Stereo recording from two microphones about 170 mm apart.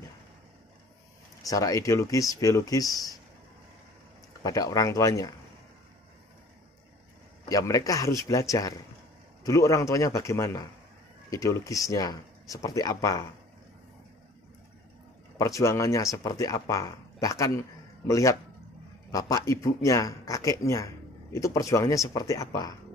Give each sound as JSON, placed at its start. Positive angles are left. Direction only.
{"t": 1.4, "sound": "speech", "side_deg": 20}
{"t": 4.4, "sound": "speech", "side_deg": 20}
{"t": 7.4, "sound": "a man's voice", "side_deg": 20}
{"t": 15.3, "sound": "speech", "side_deg": 20}